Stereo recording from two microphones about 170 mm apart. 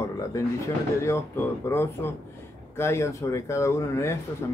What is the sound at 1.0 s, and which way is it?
Speech, 15° left (ahead or behind).